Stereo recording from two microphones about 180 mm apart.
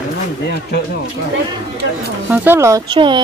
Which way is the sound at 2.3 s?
10° right (ahead or behind).